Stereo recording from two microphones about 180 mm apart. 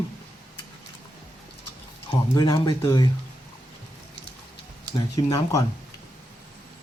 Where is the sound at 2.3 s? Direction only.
20° left (ahead or behind).